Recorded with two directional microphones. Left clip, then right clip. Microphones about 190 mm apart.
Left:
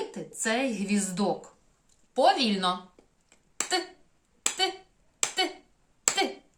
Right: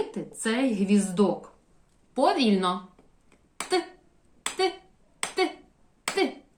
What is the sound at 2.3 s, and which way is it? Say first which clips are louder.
Speech: right 2 dB; 15° left (ahead or behind).